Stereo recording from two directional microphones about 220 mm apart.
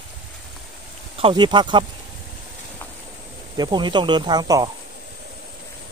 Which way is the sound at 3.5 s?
20° right (ahead or behind).